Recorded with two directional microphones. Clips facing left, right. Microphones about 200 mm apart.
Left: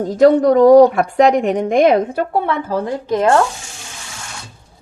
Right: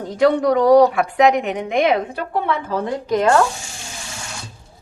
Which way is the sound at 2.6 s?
30° left (ahead or behind).